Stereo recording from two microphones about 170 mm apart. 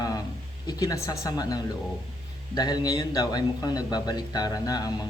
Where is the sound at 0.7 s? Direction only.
20° left (ahead or behind).